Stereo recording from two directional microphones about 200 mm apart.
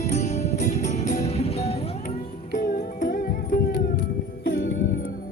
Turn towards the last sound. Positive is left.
turn(degrees=70)  # may be behind; listen again after turning